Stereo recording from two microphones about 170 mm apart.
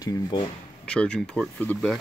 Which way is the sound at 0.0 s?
20° left (ahead or behind).